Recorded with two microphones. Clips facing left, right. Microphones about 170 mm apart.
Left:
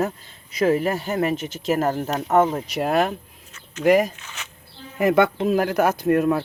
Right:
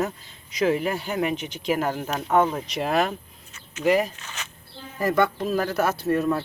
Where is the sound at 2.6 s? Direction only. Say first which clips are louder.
Left 3 dB; centre (ahead or behind).